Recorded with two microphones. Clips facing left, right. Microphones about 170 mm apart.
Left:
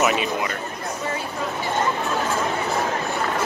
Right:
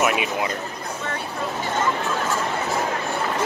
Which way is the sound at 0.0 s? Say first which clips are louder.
Left 1 dB; 5° right (ahead or behind).